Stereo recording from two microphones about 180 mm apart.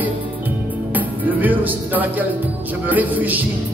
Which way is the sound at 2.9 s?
10° right (ahead or behind).